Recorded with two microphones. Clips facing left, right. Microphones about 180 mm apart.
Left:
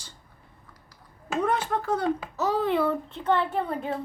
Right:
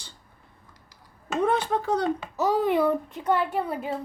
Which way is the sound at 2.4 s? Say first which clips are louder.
Right 3 dB; 15° right (ahead or behind).